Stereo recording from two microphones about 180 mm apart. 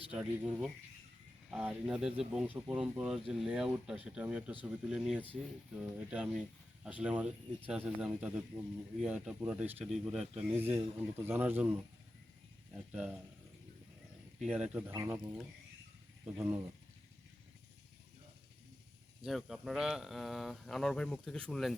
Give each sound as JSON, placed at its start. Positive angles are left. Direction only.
{"t": 0.1, "sound": "speech", "side_deg": -5}
{"t": 12.9, "sound": "speech", "side_deg": -5}
{"t": 14.4, "sound": "speech", "side_deg": -5}
{"t": 16.2, "sound": "speech", "side_deg": -15}
{"t": 19.2, "sound": "speech", "side_deg": 0}